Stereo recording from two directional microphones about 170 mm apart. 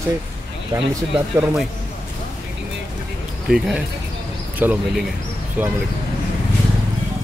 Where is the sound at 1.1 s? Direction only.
5° right (ahead or behind).